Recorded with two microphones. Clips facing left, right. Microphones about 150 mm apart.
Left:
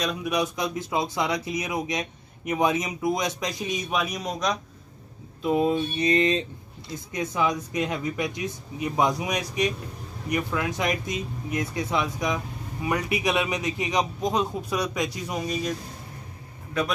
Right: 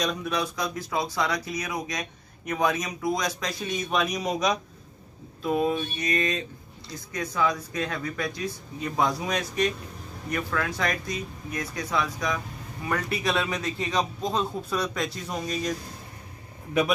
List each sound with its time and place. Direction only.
0.0 s speech: 5° left (ahead or behind)
0.3 s speech: 20° left (ahead or behind)
4.0 s speech: centre (ahead or behind)
5.4 s speech: 20° left (ahead or behind)